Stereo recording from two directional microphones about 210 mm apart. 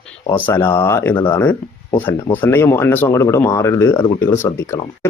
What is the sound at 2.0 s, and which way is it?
Speech, 10° left (ahead or behind).